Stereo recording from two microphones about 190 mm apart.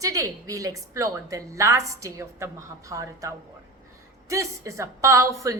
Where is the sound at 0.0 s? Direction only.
15° right (ahead or behind).